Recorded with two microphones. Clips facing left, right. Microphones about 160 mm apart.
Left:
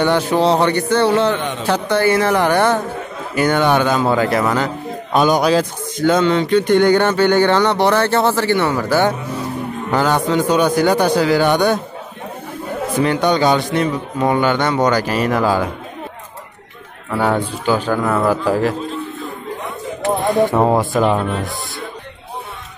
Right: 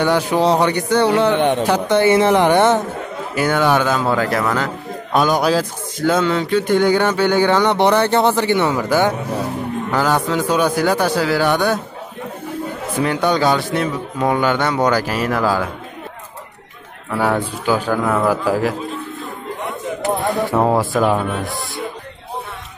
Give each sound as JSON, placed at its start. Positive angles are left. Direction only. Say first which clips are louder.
{"t": 0.0, "sound": "a woman's voice", "louder": "left 1 dB", "side_deg": -10}
{"t": 3.3, "sound": "a man's voice", "louder": "left 1 dB", "side_deg": -5}
{"t": 13.0, "sound": "a man's voice", "louder": "left 1 dB", "side_deg": -5}
{"t": 17.5, "sound": "speech", "louder": "left 1 dB", "side_deg": -10}
{"t": 20.5, "sound": "a man's voice", "louder": "left 1 dB", "side_deg": 0}